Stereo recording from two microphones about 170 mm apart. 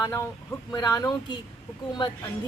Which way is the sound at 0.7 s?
20° left (ahead or behind).